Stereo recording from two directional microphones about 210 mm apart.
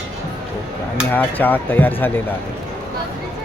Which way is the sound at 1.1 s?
10° left (ahead or behind).